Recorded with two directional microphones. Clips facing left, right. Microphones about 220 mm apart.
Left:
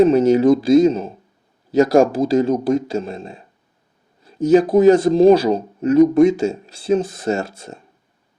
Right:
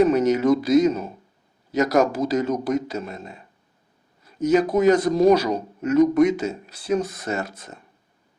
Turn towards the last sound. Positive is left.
turn(degrees=30)  # may be behind; listen again after turning